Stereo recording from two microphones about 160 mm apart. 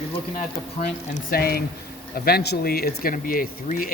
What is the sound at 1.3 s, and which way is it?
Speech, 70° left (ahead or behind).